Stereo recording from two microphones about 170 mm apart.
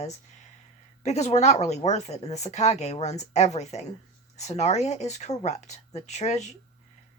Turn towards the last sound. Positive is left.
turn(degrees=40)  # may be behind; listen again after turning